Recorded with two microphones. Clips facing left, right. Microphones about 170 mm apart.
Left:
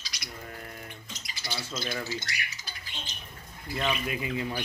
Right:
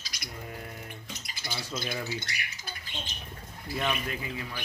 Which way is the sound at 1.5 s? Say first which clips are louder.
Even; 55° right (ahead or behind).